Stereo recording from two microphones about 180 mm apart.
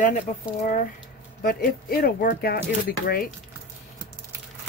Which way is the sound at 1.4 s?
55° left (ahead or behind).